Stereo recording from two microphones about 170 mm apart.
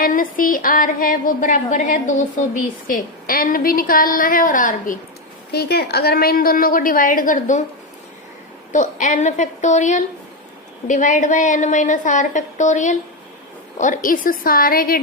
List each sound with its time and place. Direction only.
0.0 s a woman's voice: 55° left (ahead or behind)
5.5 s a woman's voice: 70° left (ahead or behind); by 7.6 s 50° left (ahead or behind)
8.7 s a woman's voice: 45° left (ahead or behind)